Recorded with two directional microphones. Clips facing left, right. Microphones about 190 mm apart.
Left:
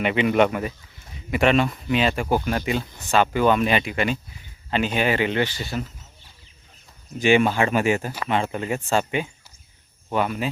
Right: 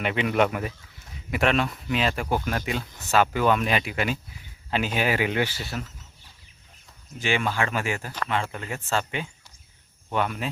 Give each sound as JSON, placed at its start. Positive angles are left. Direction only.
{"t": 0.0, "sound": "speech", "side_deg": 0}
{"t": 7.2, "sound": "speech", "side_deg": 15}
{"t": 10.1, "sound": "speech", "side_deg": 5}